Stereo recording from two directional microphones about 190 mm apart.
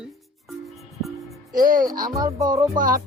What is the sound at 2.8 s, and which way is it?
Speech, 45° right (ahead or behind).